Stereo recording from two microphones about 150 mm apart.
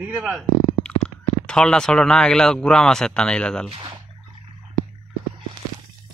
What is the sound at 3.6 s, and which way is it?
Speech, 35° right (ahead or behind).